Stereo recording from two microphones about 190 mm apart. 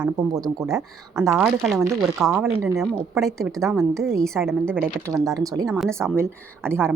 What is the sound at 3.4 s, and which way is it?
Speech, 15° right (ahead or behind).